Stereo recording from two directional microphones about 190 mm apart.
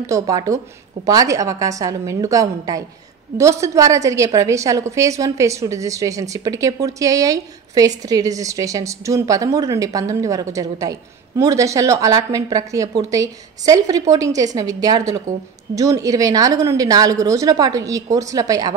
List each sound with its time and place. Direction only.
0.0 s a woman's voice: 15° right (ahead or behind)